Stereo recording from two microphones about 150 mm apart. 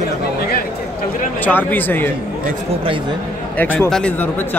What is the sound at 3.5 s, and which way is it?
Speech, 10° left (ahead or behind).